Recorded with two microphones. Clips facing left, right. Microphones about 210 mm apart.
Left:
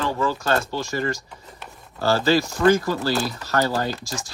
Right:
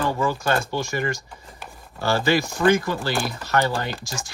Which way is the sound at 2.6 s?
40° left (ahead or behind).